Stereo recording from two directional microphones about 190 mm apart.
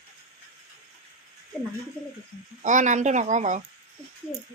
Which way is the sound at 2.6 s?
40° right (ahead or behind).